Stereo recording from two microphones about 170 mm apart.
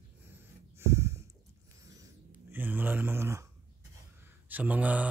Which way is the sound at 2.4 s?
10° right (ahead or behind).